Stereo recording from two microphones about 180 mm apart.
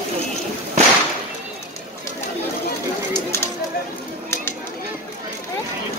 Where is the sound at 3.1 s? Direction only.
15° left (ahead or behind).